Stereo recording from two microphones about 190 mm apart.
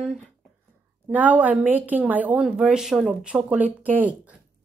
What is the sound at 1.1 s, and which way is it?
Speech, 10° right (ahead or behind).